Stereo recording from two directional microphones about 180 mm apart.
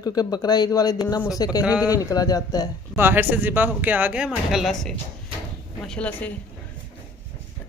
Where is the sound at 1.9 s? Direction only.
20° left (ahead or behind).